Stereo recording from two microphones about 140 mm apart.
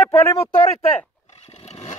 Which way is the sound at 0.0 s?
20° left (ahead or behind).